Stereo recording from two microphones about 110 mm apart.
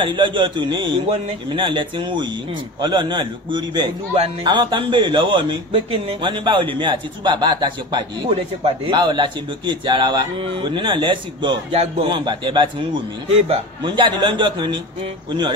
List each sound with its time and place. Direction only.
0.0 s a man's voice: 45° right (ahead or behind)